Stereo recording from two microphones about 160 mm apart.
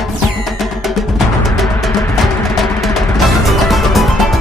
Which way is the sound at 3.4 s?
Centre (ahead or behind).